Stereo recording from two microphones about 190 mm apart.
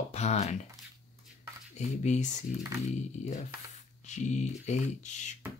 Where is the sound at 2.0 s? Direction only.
35° left (ahead or behind).